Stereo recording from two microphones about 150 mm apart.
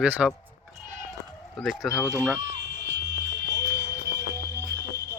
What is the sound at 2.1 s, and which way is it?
Speech, 20° right (ahead or behind).